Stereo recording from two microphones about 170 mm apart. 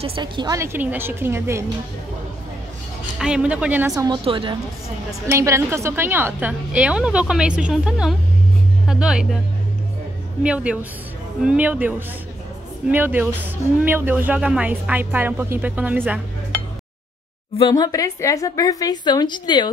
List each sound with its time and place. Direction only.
0.0 s speech: 30° right (ahead or behind); by 1.6 s 15° right (ahead or behind)
3.2 s speech: 5° right (ahead or behind)
4.2 s a woman's voice: 30° right (ahead or behind)
5.2 s speech: 15° right (ahead or behind)
10.4 s speech: 5° right (ahead or behind)
17.6 s speech: 25° left (ahead or behind)